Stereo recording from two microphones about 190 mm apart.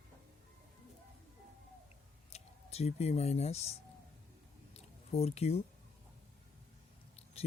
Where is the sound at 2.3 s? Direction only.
35° left (ahead or behind).